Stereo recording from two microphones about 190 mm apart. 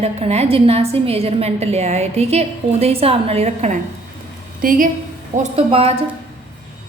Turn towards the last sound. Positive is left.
turn(degrees=-30)  # may be behind; listen again after turning